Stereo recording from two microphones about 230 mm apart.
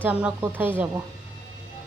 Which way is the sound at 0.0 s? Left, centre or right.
Centre.